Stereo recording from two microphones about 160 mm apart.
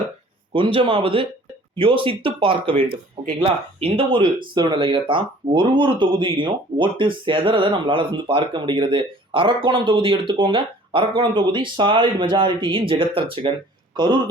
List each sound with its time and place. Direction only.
0.5 s speech: 35° right (ahead or behind)